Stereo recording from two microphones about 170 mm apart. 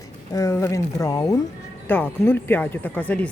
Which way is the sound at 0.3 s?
20° left (ahead or behind).